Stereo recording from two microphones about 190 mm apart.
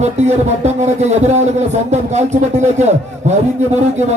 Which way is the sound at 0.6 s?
35° right (ahead or behind).